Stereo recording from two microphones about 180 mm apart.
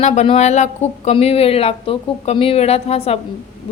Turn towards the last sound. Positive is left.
turn(degrees=35)  # may be behind; listen again after turning